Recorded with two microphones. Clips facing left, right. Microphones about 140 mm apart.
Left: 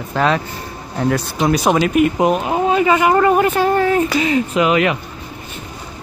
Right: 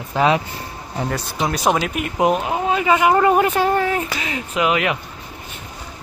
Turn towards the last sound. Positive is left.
turn(degrees=-5)  # may be behind; listen again after turning